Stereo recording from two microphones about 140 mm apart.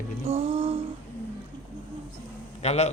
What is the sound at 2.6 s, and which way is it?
Speech, 50° left (ahead or behind).